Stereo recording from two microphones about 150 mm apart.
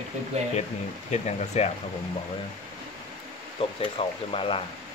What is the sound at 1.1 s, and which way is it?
Speech, 45° left (ahead or behind).